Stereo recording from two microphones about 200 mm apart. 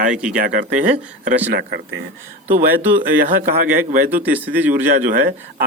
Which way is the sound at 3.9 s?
45° right (ahead or behind).